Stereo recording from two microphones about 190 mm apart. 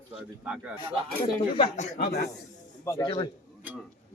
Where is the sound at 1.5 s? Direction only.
30° left (ahead or behind).